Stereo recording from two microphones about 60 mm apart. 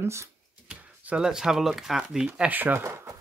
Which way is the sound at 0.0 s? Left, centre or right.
Right.